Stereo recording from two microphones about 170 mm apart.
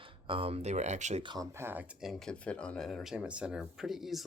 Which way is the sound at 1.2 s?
20° right (ahead or behind).